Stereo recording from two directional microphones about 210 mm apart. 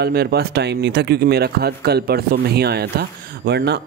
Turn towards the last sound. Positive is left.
turn(degrees=-50)  # may be behind; listen again after turning